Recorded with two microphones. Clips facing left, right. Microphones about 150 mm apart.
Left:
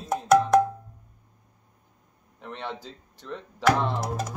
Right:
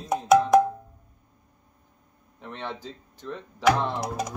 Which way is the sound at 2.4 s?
10° left (ahead or behind).